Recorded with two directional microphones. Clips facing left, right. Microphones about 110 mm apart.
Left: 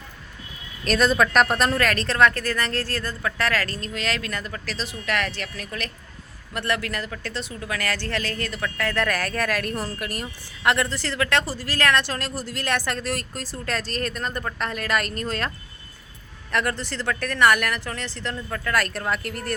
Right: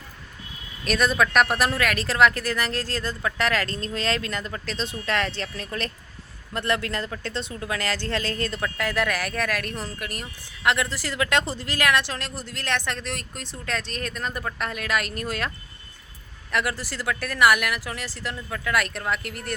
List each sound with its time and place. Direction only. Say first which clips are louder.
0.9 s speech: left 2 dB; centre (ahead or behind); by 3.8 s 20° right (ahead or behind)
3.8 s speech: right 2 dB; 30° right (ahead or behind); by 9.0 s 15° right (ahead or behind)
9.0 s speech: left 2 dB; 5° right (ahead or behind)